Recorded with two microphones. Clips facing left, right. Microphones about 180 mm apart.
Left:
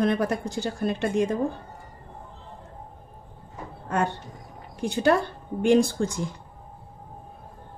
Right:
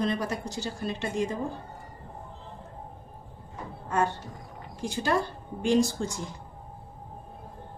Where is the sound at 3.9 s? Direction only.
60° left (ahead or behind).